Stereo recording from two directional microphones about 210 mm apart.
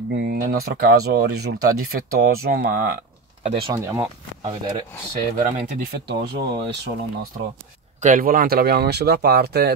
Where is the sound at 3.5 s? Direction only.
25° right (ahead or behind).